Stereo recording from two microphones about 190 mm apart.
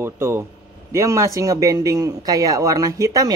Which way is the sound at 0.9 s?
15° right (ahead or behind).